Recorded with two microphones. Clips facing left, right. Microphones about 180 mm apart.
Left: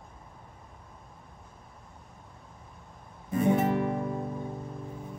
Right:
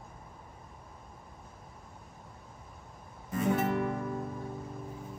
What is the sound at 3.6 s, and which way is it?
Music, 30° left (ahead or behind).